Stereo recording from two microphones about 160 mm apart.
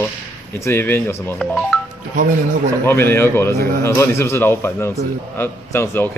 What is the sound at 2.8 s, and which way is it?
Speech, 15° left (ahead or behind).